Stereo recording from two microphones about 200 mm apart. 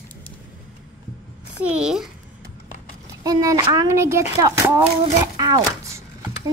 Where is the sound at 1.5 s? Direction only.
5° right (ahead or behind).